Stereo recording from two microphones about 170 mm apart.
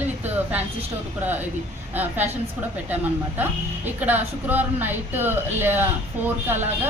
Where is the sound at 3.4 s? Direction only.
10° right (ahead or behind).